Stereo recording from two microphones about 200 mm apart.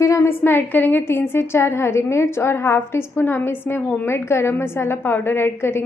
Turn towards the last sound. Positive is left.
turn(degrees=10)  # may be behind; listen again after turning